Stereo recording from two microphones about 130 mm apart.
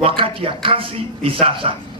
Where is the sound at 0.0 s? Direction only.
40° right (ahead or behind).